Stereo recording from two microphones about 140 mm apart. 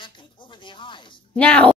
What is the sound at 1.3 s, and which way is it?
Speech, 10° left (ahead or behind).